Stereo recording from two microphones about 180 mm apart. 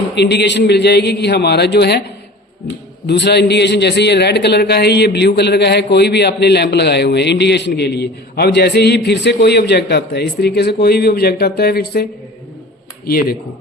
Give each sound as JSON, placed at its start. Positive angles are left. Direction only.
{"t": 0.2, "sound": "a man's voice", "side_deg": 70}
{"t": 3.1, "sound": "a man's voice", "side_deg": 70}
{"t": 13.1, "sound": "speech", "side_deg": 55}